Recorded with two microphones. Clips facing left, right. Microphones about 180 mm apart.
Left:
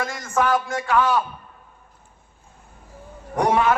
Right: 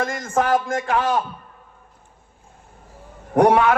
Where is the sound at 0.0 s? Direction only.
50° right (ahead or behind).